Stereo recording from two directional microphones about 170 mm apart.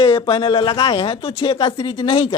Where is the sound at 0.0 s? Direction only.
30° left (ahead or behind).